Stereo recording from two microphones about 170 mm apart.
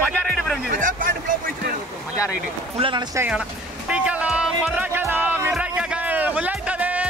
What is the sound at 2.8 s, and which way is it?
Speech, 30° right (ahead or behind).